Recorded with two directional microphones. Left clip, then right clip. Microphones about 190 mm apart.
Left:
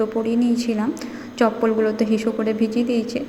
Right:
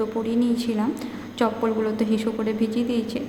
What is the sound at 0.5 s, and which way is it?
Speech, 10° left (ahead or behind).